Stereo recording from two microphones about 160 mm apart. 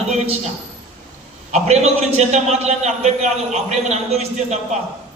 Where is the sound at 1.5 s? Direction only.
40° right (ahead or behind).